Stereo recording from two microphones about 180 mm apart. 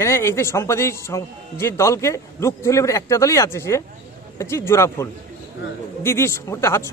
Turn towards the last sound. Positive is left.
turn(degrees=15)  # may be behind; listen again after turning